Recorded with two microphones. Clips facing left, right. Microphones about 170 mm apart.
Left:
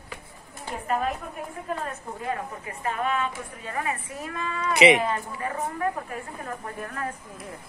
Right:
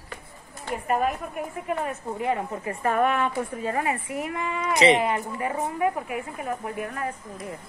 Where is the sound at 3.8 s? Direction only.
20° right (ahead or behind).